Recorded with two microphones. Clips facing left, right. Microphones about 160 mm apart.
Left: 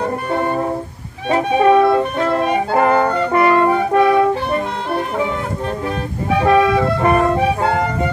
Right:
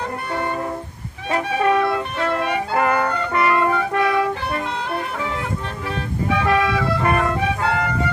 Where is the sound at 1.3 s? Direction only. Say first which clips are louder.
Left 6 dB; 20° left (ahead or behind).